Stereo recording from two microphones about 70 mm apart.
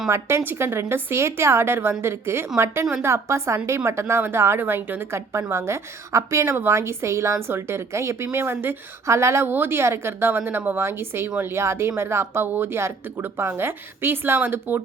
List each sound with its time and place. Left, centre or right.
0.1 s a woman's voice: right